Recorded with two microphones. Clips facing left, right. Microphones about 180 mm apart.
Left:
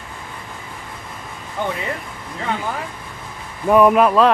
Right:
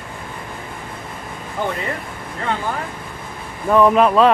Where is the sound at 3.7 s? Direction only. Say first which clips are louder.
Left 1 dB; 10° left (ahead or behind).